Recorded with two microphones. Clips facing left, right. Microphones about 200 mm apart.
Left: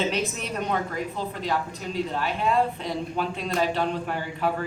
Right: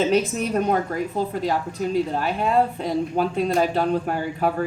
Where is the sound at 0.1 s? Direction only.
40° right (ahead or behind).